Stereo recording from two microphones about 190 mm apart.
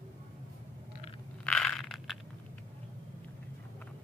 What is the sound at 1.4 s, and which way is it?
Crushing, 5° left (ahead or behind).